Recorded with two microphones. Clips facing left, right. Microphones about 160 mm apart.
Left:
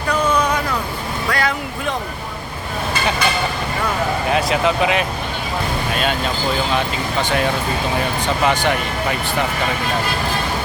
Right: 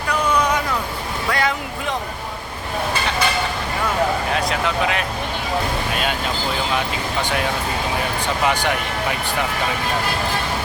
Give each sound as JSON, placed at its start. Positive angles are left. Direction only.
{"t": 1.3, "sound": "a sound", "side_deg": -20}
{"t": 4.4, "sound": "speech", "side_deg": 5}
{"t": 8.4, "sound": "speech", "side_deg": -10}